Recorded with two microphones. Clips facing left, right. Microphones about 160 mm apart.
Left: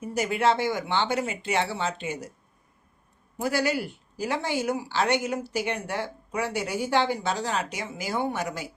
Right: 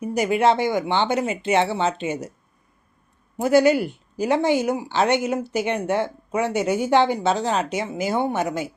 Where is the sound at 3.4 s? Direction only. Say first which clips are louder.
Right 10 dB; 20° right (ahead or behind).